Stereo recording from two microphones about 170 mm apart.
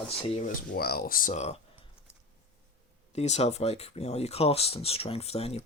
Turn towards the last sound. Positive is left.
turn(degrees=35)  # may be behind; listen again after turning